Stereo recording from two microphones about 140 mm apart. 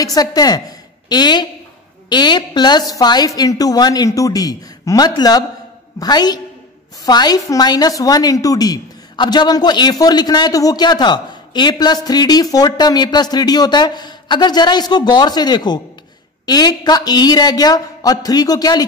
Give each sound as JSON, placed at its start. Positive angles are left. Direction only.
{"t": 0.0, "sound": "a woman's voice", "side_deg": 25}